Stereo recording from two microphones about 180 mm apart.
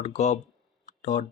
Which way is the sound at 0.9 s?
45° left (ahead or behind).